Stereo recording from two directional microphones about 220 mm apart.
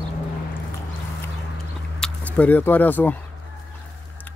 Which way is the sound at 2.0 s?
5° left (ahead or behind).